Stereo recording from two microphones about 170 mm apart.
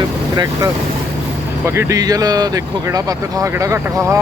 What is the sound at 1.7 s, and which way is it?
Speech, 15° right (ahead or behind).